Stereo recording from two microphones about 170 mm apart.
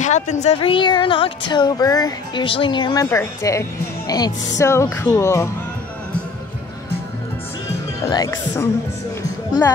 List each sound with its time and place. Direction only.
0.0 s speech: 45° left (ahead or behind); by 5.5 s 15° left (ahead or behind)
8.1 s speech: 20° left (ahead or behind)